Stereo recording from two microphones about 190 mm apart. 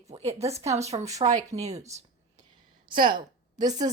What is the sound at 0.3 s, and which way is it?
Speech, 35° right (ahead or behind).